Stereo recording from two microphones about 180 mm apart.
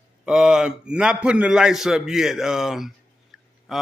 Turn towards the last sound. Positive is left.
turn(degrees=0)  # may be behind; listen again after turning